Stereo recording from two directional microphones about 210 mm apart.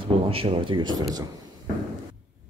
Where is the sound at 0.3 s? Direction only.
25° right (ahead or behind).